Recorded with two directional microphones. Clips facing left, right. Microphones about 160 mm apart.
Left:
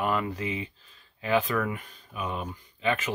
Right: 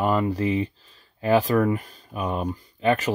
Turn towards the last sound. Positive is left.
turn(degrees=-40)  # may be behind; listen again after turning